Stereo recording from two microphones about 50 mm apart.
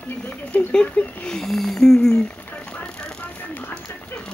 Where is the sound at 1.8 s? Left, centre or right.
Centre.